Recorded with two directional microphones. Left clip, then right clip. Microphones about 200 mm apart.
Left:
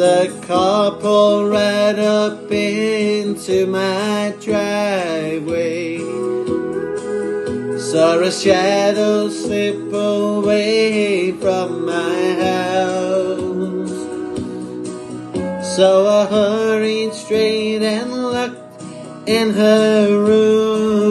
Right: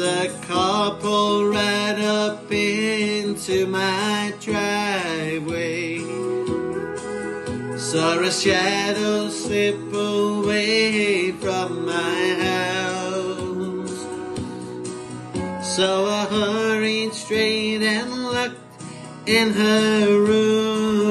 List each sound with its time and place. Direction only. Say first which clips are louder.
0.0 s music: left 9 dB; 10° right (ahead or behind)
7.9 s mantra: left 6 dB; 15° right (ahead or behind)
9.5 s music: left 2 dB; 10° right (ahead or behind)
11.0 s mantra: left 4 dB; 10° right (ahead or behind)
12.3 s music: left 4 dB; 10° right (ahead or behind)
15.7 s music: left 9 dB; 30° left (ahead or behind)
17.5 s music: left 4 dB; 15° right (ahead or behind)
17.9 s music: left 4 dB; 30° left (ahead or behind)
19.5 s mantra: left 6 dB; 10° right (ahead or behind)